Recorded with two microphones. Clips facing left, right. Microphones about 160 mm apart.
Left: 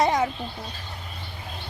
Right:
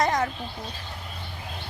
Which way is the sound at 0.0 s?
5° left (ahead or behind).